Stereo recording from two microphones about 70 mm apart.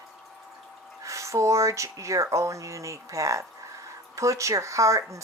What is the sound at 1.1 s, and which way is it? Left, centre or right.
Speech, right.